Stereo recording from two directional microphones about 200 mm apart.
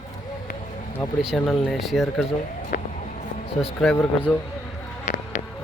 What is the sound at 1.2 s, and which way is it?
Speech, centre (ahead or behind).